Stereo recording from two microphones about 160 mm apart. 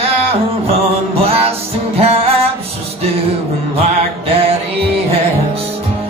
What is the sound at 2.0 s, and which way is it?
Music, 40° right (ahead or behind).